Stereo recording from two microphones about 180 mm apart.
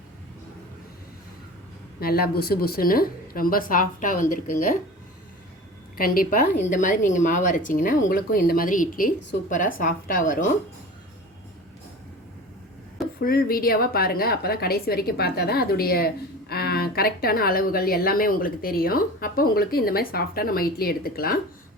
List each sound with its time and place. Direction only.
2.0 s a woman's voice: 60° left (ahead or behind)
6.0 s a woman's voice: 50° left (ahead or behind)
13.1 s a woman's voice: 55° left (ahead or behind)